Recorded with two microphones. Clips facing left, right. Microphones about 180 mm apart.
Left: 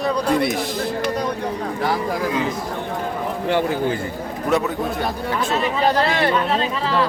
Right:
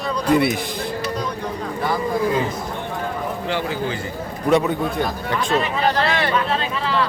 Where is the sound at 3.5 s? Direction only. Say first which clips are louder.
Left 6 dB; 50° left (ahead or behind).